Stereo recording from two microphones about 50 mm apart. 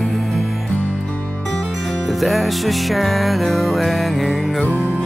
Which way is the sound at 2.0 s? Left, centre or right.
Centre.